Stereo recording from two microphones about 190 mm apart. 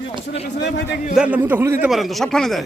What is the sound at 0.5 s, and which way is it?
Speech, 65° left (ahead or behind).